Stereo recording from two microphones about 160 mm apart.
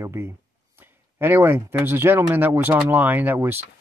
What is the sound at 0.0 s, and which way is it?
Speech, 15° right (ahead or behind).